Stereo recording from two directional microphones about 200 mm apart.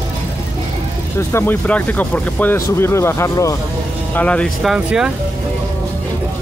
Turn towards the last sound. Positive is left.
turn(degrees=0)  # may be behind; listen again after turning